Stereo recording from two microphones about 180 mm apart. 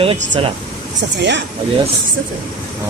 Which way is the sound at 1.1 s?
80° right.